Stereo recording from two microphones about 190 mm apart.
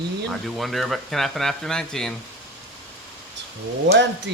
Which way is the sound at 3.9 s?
70° right (ahead or behind).